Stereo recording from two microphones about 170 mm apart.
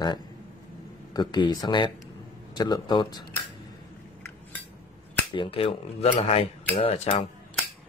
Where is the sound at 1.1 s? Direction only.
25° left (ahead or behind).